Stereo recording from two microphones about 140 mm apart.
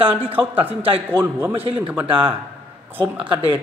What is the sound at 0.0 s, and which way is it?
Speech, 40° right (ahead or behind).